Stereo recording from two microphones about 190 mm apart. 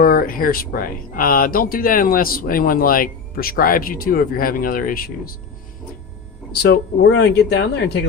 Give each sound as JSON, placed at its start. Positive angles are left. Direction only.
{"t": 0.0, "sound": "speech", "side_deg": 50}
{"t": 6.5, "sound": "speech", "side_deg": 55}